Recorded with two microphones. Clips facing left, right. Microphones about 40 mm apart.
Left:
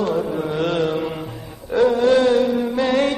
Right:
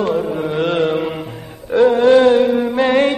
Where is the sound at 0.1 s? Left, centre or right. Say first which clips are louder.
Right 3 dB; right.